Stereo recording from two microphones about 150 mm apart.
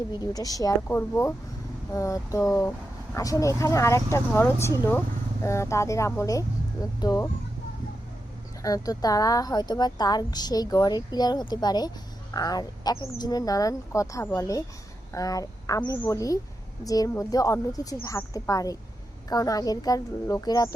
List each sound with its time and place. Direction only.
0.2 s a woman's voice: 25° left (ahead or behind)
8.6 s a woman's voice: 25° left (ahead or behind)